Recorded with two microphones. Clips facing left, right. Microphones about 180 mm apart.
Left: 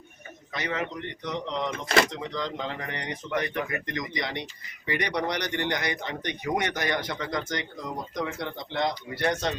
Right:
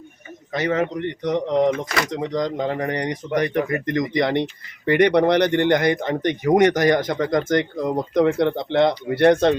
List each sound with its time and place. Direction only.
0.5 s speech: 40° right (ahead or behind)
0.9 s speech: 55° right (ahead or behind)
2.1 s speech: 40° right (ahead or behind); by 9.6 s 60° right (ahead or behind)